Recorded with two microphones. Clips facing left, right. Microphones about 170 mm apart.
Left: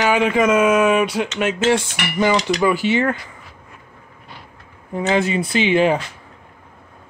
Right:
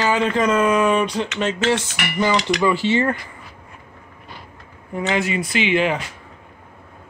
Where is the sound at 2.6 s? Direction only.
5° left (ahead or behind).